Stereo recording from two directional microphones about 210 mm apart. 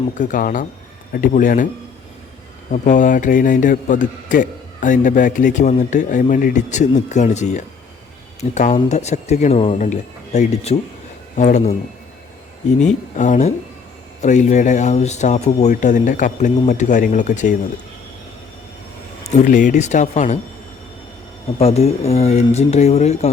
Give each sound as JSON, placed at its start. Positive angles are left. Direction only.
{"t": 0.2, "sound": "a man's voice", "side_deg": 40}
{"t": 2.7, "sound": "a man's voice", "side_deg": 35}
{"t": 12.8, "sound": "a man's voice", "side_deg": 35}
{"t": 19.2, "sound": "a man's voice", "side_deg": 35}
{"t": 21.6, "sound": "a man's voice", "side_deg": 30}